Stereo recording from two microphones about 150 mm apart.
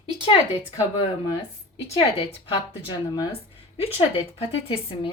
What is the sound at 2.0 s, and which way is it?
Speech, 40° left (ahead or behind).